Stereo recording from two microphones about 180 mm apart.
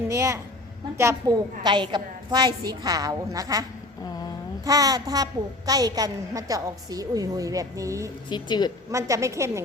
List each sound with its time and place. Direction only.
0.1 s a woman's voice: 15° right (ahead or behind)
8.3 s a woman's voice: 25° left (ahead or behind)
8.9 s a woman's voice: 15° right (ahead or behind)